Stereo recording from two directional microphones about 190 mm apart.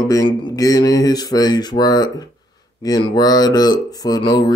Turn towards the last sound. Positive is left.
turn(degrees=20)  # may be behind; listen again after turning